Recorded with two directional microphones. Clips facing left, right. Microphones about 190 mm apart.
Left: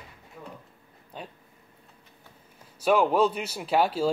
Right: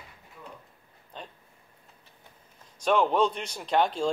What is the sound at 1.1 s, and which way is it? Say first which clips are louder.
Speech: left 3 dB; 10° left (ahead or behind).